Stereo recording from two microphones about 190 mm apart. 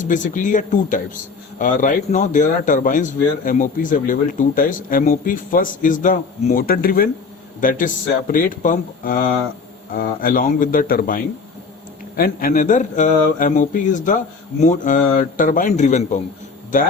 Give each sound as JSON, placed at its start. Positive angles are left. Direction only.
{"t": 0.0, "sound": "a man's voice", "side_deg": 45}